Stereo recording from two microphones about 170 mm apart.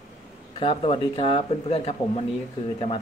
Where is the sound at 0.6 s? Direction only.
30° left (ahead or behind).